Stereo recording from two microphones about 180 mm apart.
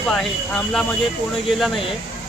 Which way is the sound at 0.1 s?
Centre (ahead or behind).